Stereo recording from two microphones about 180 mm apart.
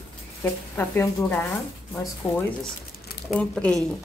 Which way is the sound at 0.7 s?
10° left (ahead or behind).